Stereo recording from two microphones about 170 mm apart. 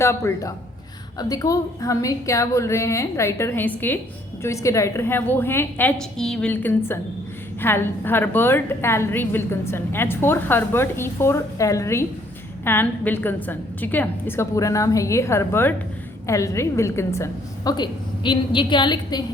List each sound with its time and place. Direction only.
0.0 s a woman's voice: 15° left (ahead or behind)